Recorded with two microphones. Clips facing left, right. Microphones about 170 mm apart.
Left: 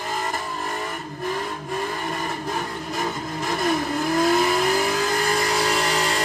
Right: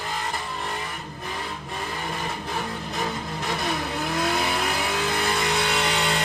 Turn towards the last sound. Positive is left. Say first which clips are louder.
# left 2 dB
turn(degrees=40)  # may be behind; listen again after turning